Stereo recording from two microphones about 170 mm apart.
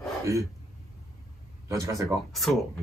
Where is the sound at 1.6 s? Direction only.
20° right (ahead or behind).